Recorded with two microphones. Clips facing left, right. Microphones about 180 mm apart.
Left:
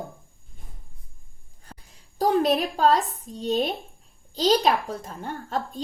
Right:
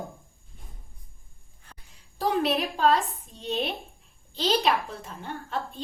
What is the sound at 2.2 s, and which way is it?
A child's voice, 40° left (ahead or behind).